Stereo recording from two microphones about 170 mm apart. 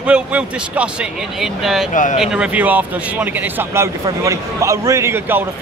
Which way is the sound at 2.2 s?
5° right (ahead or behind).